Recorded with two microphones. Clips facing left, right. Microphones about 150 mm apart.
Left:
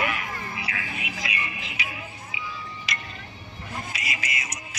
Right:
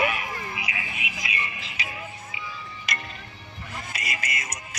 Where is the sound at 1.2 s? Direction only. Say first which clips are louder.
Left 1 dB; 30° right (ahead or behind).